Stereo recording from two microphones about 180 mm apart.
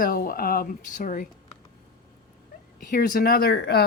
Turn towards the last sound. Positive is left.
turn(degrees=65)  # may be behind; listen again after turning